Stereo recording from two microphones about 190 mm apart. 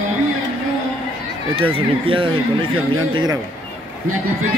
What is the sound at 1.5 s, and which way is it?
Speech, 30° right (ahead or behind).